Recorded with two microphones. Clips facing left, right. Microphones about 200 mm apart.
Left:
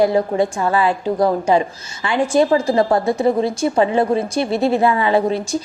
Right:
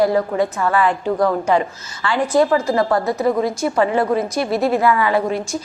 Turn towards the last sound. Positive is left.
turn(degrees=30)  # may be behind; listen again after turning